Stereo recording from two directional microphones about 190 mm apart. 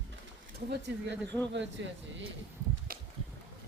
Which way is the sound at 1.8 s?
70° right (ahead or behind).